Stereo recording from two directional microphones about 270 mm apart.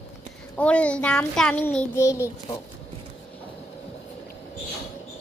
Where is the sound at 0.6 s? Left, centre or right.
Centre.